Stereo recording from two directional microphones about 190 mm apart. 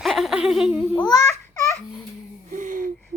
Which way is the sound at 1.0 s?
20° left (ahead or behind).